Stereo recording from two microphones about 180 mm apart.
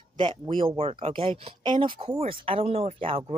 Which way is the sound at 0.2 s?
25° right (ahead or behind).